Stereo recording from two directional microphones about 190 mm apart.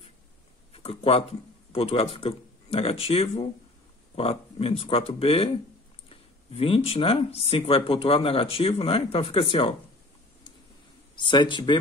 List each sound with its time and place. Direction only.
0.7 s speech: 30° left (ahead or behind)
11.1 s speech: 25° left (ahead or behind)